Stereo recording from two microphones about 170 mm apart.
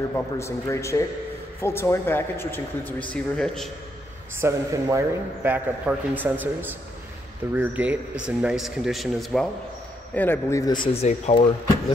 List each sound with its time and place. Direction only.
0.1 s a man's voice: 15° left (ahead or behind)
4.4 s a man's voice: 15° right (ahead or behind); by 11.4 s 40° left (ahead or behind)